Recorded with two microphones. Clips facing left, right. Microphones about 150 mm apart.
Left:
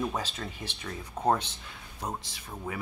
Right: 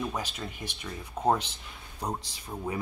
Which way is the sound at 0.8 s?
5° right (ahead or behind).